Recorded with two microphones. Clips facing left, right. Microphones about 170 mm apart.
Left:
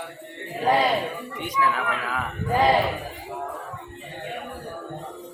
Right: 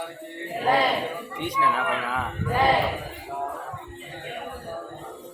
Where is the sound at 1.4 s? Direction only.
30° right (ahead or behind).